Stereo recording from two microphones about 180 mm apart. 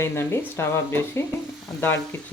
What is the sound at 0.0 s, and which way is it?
Speech, 15° left (ahead or behind).